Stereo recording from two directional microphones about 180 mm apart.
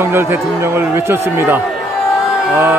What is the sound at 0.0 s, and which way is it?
Speech, 15° right (ahead or behind).